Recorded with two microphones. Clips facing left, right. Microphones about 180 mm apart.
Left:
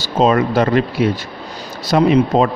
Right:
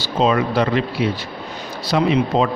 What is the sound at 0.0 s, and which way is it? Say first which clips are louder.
A man's voice: left 3 dB; 45° left (ahead or behind).